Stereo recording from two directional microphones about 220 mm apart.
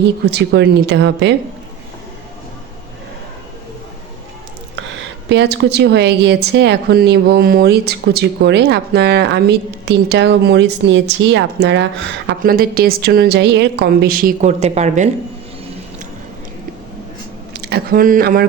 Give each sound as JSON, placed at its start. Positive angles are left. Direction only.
{"t": 0.0, "sound": "a woman's voice", "side_deg": -50}
{"t": 5.3, "sound": "a woman's voice", "side_deg": -50}
{"t": 12.3, "sound": "a woman's voice", "side_deg": -40}
{"t": 17.5, "sound": "speech", "side_deg": -45}